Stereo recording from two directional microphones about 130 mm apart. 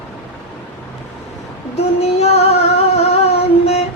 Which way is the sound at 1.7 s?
55° left (ahead or behind).